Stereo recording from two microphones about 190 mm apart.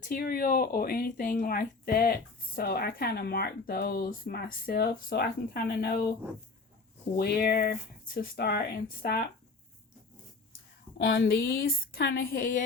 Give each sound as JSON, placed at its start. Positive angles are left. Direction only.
{"t": 0.1, "sound": "speech", "side_deg": 50}
{"t": 7.2, "sound": "speech", "side_deg": 55}
{"t": 10.9, "sound": "speech", "side_deg": 65}